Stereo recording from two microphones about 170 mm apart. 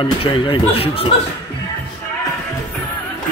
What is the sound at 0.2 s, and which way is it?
Speech, 30° left (ahead or behind).